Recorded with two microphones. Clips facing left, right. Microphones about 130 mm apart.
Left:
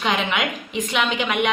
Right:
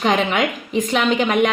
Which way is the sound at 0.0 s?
40° right (ahead or behind).